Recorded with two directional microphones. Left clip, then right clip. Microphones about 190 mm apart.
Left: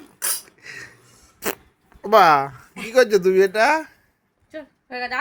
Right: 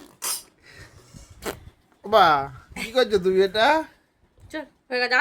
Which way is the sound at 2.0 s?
15° left (ahead or behind).